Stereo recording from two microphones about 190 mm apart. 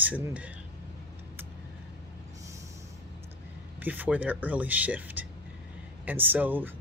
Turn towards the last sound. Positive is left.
turn(degrees=-10)  # may be behind; listen again after turning